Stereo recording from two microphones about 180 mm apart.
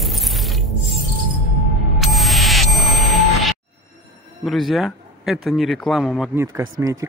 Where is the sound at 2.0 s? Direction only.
Centre (ahead or behind).